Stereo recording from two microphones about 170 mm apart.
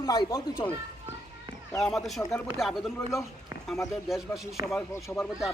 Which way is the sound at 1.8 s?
Centre (ahead or behind).